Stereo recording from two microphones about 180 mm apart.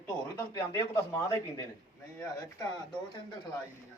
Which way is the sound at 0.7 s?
15° left (ahead or behind).